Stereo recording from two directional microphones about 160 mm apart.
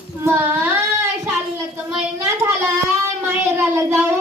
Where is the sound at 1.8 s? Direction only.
15° right (ahead or behind).